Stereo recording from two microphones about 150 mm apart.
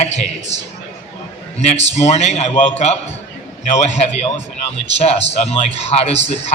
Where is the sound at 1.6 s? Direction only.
45° left (ahead or behind).